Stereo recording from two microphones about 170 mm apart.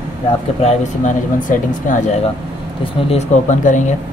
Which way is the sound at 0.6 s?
45° left (ahead or behind).